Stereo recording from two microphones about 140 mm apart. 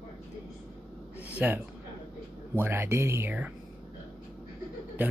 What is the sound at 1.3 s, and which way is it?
Speech, 10° right (ahead or behind).